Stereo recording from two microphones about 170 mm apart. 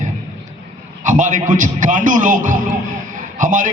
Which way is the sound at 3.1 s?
50° right (ahead or behind).